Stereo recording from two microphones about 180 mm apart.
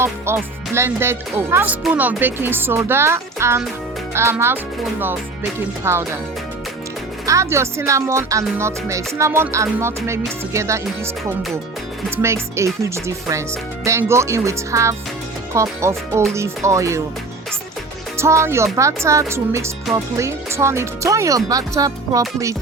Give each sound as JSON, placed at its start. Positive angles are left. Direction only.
{"t": 0.0, "sound": "speech", "side_deg": -15}
{"t": 5.8, "sound": "speech", "side_deg": -15}
{"t": 7.3, "sound": "speech", "side_deg": -15}
{"t": 12.1, "sound": "speech", "side_deg": -15}
{"t": 18.2, "sound": "speech", "side_deg": -15}